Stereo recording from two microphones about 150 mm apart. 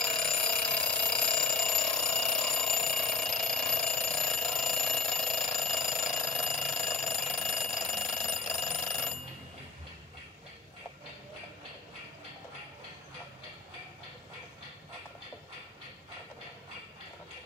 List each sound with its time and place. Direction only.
0.0 s alarm: 5° left (ahead or behind)